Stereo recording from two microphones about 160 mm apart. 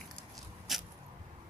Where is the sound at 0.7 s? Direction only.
Centre (ahead or behind).